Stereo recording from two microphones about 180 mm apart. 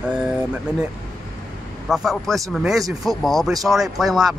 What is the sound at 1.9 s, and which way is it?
Speech, centre (ahead or behind).